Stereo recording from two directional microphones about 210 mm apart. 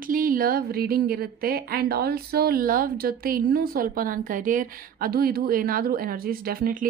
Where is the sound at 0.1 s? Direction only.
40° right (ahead or behind).